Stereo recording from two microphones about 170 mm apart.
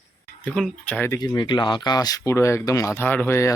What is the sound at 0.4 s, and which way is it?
Speech, 5° left (ahead or behind).